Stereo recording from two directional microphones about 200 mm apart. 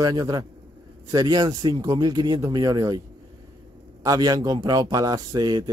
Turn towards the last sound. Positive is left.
turn(degrees=-20)  # may be behind; listen again after turning